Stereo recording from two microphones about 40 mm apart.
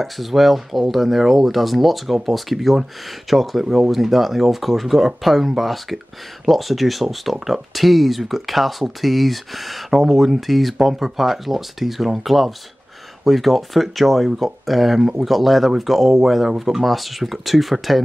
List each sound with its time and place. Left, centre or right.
0.0 s speech: centre
3.6 s speech: centre
3.9 s speech: centre